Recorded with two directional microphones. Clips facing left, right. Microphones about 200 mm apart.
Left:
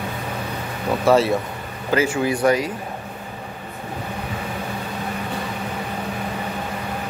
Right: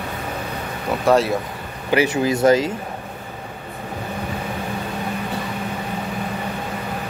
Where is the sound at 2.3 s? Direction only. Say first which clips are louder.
Right 5 dB; 25° right (ahead or behind).